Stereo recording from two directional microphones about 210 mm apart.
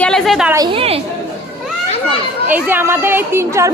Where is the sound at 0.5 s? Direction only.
20° right (ahead or behind).